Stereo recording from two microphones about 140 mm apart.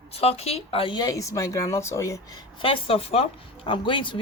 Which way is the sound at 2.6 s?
40° left (ahead or behind).